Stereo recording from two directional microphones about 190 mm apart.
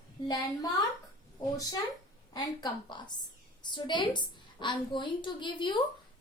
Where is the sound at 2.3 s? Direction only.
20° left (ahead or behind).